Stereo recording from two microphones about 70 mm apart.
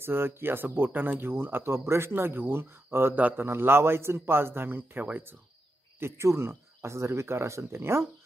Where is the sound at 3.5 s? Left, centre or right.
Right.